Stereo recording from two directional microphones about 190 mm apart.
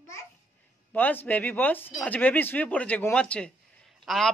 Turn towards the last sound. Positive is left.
turn(degrees=0)  # may be behind; listen again after turning